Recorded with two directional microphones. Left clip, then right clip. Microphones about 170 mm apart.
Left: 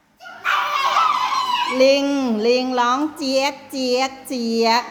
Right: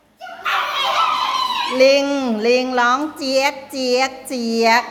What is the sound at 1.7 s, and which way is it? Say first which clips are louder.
A child's voice: right 3 dB; 20° left (ahead or behind).